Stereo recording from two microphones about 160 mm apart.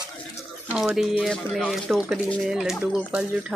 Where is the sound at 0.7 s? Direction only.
Centre (ahead or behind).